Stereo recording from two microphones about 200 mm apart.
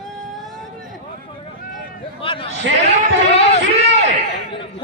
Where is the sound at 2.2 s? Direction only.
25° left (ahead or behind).